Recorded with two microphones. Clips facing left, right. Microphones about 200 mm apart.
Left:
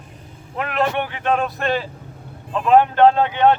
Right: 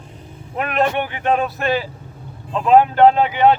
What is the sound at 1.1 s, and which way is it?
Speech, 15° right (ahead or behind).